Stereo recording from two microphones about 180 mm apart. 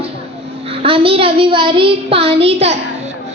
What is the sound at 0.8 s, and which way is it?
A child's voice, 30° right (ahead or behind).